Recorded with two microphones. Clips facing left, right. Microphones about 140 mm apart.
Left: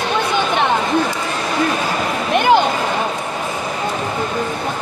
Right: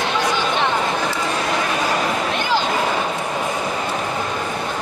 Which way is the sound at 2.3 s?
60° left (ahead or behind).